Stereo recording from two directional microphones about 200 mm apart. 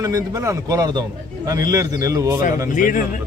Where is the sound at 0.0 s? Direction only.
15° right (ahead or behind).